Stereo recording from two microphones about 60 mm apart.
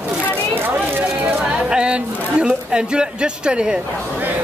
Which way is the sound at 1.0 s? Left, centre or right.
Centre.